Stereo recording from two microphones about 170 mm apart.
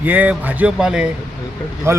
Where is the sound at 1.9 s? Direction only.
15° right (ahead or behind).